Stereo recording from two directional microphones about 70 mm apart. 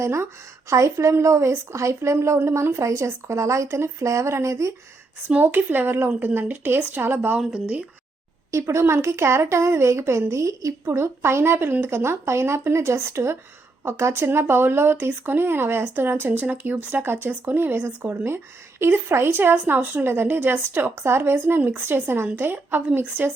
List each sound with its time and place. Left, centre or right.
0.0 s a woman's voice: right
5.3 s speech: right
7.3 s speech: centre
8.5 s a woman's voice: right
10.9 s speech: right